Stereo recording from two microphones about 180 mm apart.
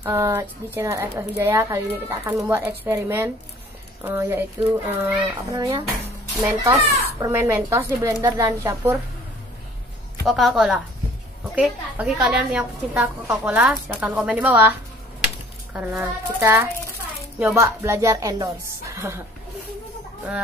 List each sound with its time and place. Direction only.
0.0 s a woman's voice: 15° right (ahead or behind)
10.2 s a woman's voice: centre (ahead or behind)
15.7 s a woman's voice: 10° right (ahead or behind)